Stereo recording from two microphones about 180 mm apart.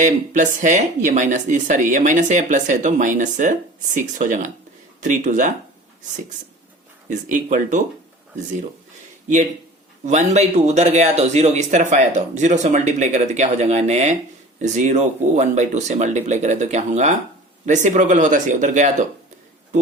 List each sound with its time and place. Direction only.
0.0 s speech: 45° right (ahead or behind)
7.1 s speech: 45° right (ahead or behind)
10.1 s speech: 40° right (ahead or behind)